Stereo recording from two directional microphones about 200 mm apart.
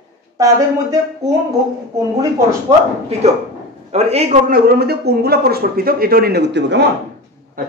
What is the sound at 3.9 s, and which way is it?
Speech, 30° right (ahead or behind).